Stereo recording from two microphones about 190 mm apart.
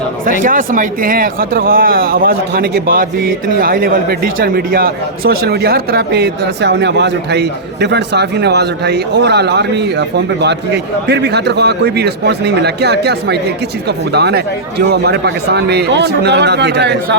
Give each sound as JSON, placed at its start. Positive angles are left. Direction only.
{"t": 0.4, "sound": "speech", "side_deg": -45}